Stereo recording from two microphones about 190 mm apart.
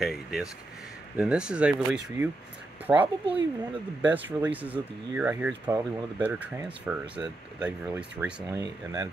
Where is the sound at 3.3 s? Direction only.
30° right (ahead or behind).